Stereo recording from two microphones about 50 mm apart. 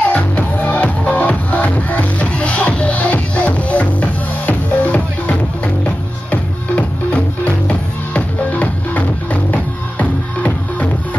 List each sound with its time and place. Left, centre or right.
0.1 s music: left